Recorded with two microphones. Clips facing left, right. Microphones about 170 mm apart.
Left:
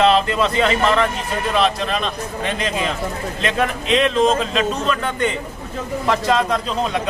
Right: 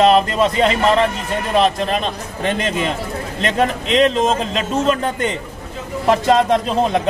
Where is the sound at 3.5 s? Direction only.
40° right (ahead or behind).